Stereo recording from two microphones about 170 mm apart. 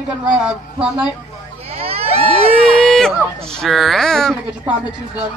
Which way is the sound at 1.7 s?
35° right (ahead or behind).